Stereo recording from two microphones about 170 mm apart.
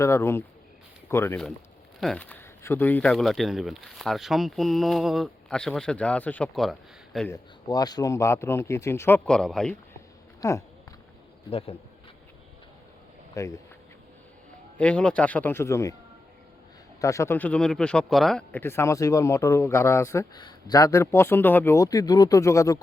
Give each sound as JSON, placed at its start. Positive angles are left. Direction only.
{"t": 0.0, "sound": "a man's voice", "side_deg": 15}
{"t": 7.3, "sound": "a man's voice", "side_deg": 20}
{"t": 10.4, "sound": "speech", "side_deg": 20}
{"t": 11.5, "sound": "speech", "side_deg": 35}
{"t": 13.3, "sound": "speech", "side_deg": 20}
{"t": 14.8, "sound": "a man's voice", "side_deg": 5}
{"t": 17.0, "sound": "a man's voice", "side_deg": 20}